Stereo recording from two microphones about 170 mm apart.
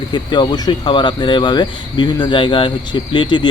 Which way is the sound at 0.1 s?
25° left (ahead or behind).